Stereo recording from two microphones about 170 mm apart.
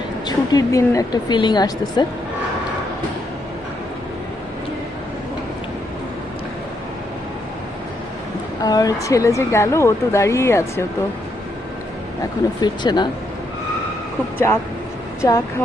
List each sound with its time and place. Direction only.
0.3 s speech: 20° left (ahead or behind)
8.6 s a woman's voice: 20° left (ahead or behind)
12.5 s speech: 25° left (ahead or behind)
14.3 s a woman's voice: 15° left (ahead or behind)